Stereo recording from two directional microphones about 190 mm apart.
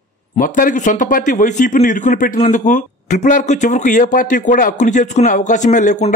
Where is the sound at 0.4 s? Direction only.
45° left (ahead or behind).